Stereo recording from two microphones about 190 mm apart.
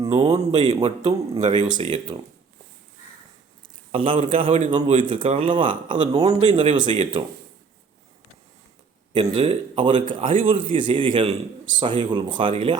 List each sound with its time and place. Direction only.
0.0 s a man's voice: 25° right (ahead or behind)
3.9 s a man's voice: 30° right (ahead or behind)
9.1 s a man's voice: 30° right (ahead or behind)